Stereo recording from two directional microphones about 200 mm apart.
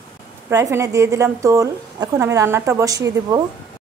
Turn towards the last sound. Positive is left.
turn(degrees=-15)  # may be behind; listen again after turning